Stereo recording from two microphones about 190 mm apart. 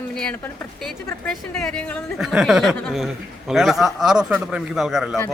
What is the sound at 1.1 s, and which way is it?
A man's voice, 5° left (ahead or behind).